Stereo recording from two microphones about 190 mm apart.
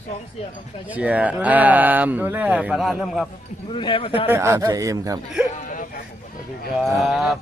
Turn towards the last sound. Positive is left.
turn(degrees=0)  # may be behind; listen again after turning